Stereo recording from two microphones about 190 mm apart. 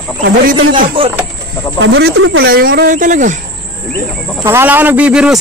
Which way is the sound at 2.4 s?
50° right (ahead or behind).